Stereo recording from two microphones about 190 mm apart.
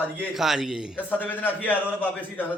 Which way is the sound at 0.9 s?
10° left (ahead or behind).